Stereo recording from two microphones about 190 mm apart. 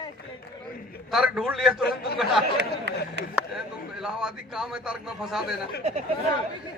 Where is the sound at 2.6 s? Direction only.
65° right (ahead or behind).